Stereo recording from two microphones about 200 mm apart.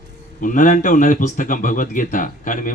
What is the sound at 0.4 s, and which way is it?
A man's voice, 40° left (ahead or behind).